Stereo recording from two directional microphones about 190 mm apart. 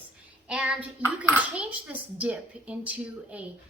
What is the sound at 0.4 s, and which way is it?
Child singing, 5° right (ahead or behind).